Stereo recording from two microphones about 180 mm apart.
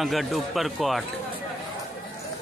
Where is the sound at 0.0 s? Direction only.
Centre (ahead or behind).